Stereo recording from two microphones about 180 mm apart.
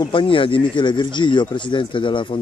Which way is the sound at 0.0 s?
30° left (ahead or behind).